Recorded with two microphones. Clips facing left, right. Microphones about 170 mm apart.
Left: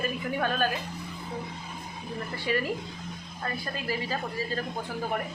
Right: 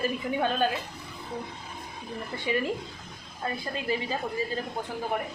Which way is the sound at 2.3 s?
20° right (ahead or behind).